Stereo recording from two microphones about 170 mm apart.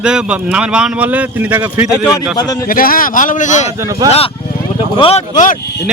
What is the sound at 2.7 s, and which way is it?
Speech, 60° left (ahead or behind).